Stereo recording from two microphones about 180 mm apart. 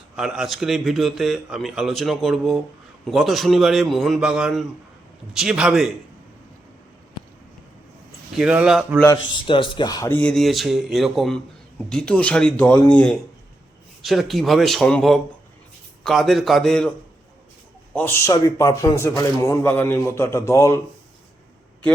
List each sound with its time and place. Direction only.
0.2 s a man's voice: 5° right (ahead or behind)
8.4 s a man's voice: 5° right (ahead or behind)
9.0 s a man's voice: 25° left (ahead or behind)
10.1 s a man's voice: 5° left (ahead or behind)
17.9 s a man's voice: 10° left (ahead or behind)